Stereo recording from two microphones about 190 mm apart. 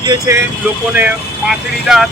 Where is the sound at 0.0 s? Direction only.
15° right (ahead or behind).